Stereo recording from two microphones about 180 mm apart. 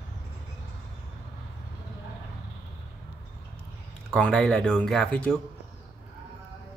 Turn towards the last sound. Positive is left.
turn(degrees=5)  # may be behind; listen again after turning